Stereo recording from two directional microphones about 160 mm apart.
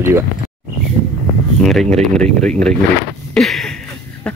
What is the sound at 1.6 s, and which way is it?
Speech, 5° left (ahead or behind).